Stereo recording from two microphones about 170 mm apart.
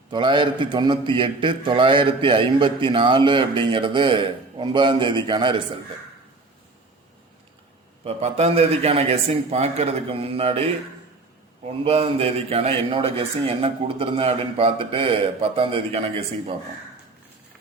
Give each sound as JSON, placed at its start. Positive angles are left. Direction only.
{"t": 0.1, "sound": "a man's voice", "side_deg": -30}
{"t": 8.0, "sound": "a man's voice", "side_deg": -40}
{"t": 11.9, "sound": "a man's voice", "side_deg": -35}